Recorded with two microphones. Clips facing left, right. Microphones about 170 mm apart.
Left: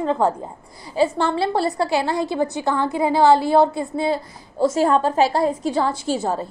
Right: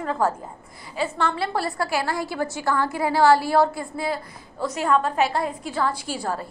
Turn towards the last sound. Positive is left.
turn(degrees=25)  # may be behind; listen again after turning